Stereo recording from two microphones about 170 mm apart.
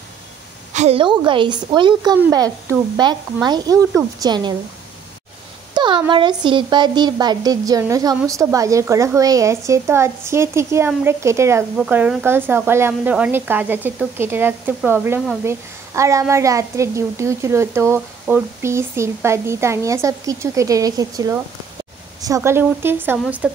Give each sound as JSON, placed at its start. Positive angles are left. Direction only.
{"t": 0.7, "sound": "speech", "side_deg": -35}
{"t": 5.8, "sound": "a woman's voice", "side_deg": -25}